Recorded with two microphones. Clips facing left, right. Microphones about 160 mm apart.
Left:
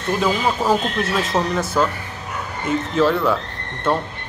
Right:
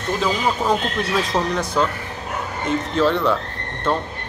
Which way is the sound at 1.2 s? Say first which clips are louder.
Left 1 dB; 5° left (ahead or behind).